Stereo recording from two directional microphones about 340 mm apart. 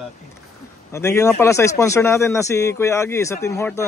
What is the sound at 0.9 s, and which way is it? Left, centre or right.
A man's voice, centre.